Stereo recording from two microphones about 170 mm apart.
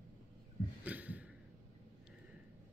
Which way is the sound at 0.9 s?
10° right (ahead or behind).